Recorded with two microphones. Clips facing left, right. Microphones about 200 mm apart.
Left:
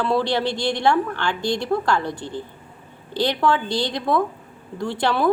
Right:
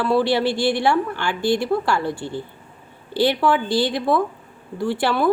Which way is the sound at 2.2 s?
20° left (ahead or behind).